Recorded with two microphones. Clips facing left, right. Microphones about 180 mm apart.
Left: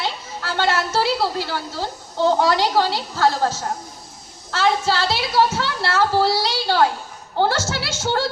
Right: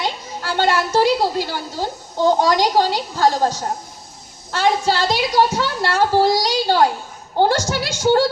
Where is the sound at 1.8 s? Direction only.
40° right (ahead or behind).